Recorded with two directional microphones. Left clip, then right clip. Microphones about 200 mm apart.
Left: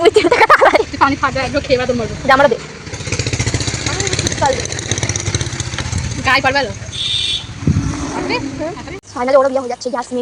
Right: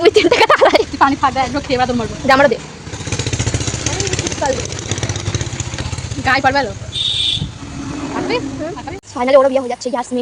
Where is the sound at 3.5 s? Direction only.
10° left (ahead or behind).